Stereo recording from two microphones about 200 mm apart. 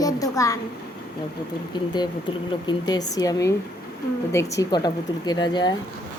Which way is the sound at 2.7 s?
20° left (ahead or behind).